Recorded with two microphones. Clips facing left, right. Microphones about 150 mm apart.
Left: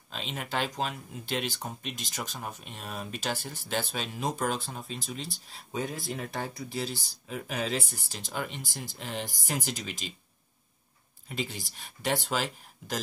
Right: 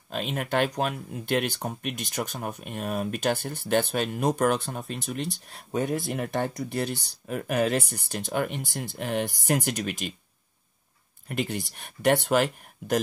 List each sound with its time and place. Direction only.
0.1 s speech: 55° right (ahead or behind)
11.2 s speech: 60° right (ahead or behind)